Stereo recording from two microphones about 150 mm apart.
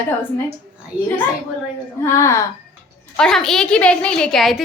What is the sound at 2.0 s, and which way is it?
Speech, 20° left (ahead or behind).